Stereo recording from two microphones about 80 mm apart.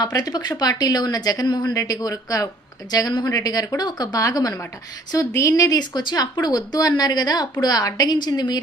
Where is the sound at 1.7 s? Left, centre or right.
Left.